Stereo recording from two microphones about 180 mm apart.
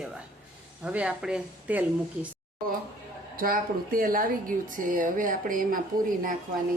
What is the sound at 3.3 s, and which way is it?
A woman's voice, 55° right (ahead or behind).